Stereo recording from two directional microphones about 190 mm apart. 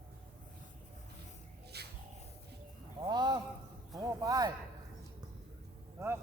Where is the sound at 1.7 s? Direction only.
60° right (ahead or behind).